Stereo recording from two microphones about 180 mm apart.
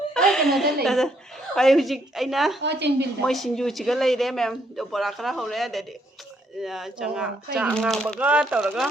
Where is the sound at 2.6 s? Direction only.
70° right (ahead or behind).